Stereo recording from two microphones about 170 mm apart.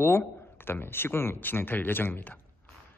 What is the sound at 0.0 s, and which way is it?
Speech, 15° left (ahead or behind).